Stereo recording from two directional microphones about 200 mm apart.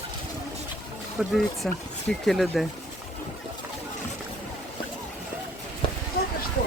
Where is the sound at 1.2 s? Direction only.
5° right (ahead or behind).